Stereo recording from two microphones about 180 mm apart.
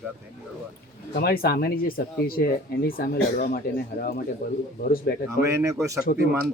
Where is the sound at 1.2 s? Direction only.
60° left (ahead or behind).